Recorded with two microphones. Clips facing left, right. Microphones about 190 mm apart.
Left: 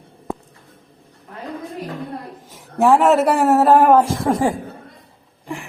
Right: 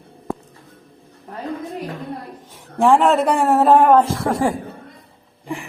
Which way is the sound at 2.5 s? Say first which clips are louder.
Even; 5° left (ahead or behind).